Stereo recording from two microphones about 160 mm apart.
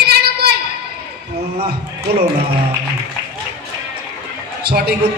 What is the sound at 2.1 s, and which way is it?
Speech, 80° right.